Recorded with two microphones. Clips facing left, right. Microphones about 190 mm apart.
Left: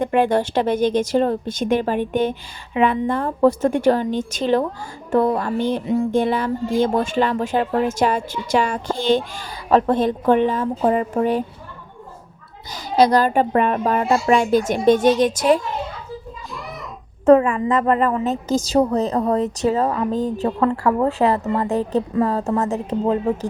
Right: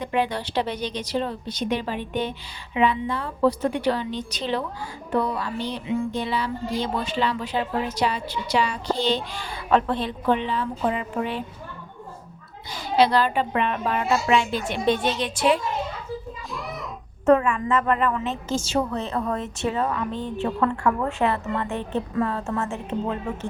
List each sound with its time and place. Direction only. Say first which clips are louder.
0.0 s speech: left 8 dB; 50° left (ahead or behind)
13.0 s speech: left 5 dB; 45° left (ahead or behind)
16.5 s a child's voice: even; centre (ahead or behind)
17.2 s a woman's voice: left 5 dB; 35° left (ahead or behind)